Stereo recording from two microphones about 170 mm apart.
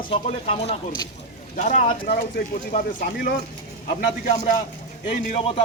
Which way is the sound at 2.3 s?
60° left (ahead or behind).